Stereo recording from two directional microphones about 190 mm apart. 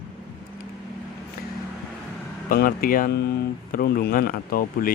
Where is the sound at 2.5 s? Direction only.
50° left (ahead or behind).